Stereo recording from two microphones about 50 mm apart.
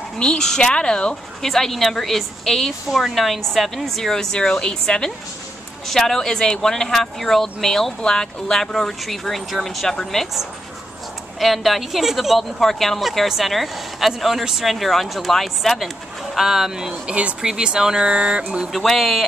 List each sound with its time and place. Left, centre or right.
0.2 s speech: centre
1.5 s speech: centre
11.3 s speech: centre
16.3 s speech: centre
17.1 s speech: right
17.5 s speech: centre
18.7 s speech: centre